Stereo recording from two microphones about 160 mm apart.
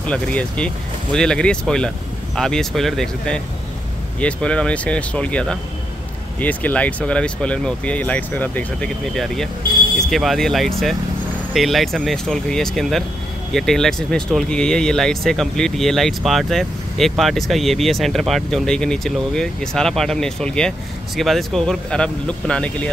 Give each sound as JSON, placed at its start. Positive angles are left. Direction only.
{"t": 0.0, "sound": "speech", "side_deg": 10}